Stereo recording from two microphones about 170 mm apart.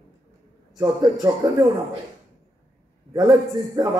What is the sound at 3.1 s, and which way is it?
Speech, 20° right (ahead or behind).